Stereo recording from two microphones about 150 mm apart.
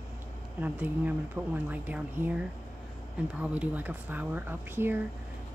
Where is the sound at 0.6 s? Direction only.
10° right (ahead or behind).